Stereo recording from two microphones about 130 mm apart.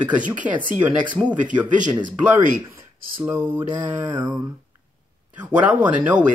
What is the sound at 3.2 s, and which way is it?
Mantra, 15° right (ahead or behind).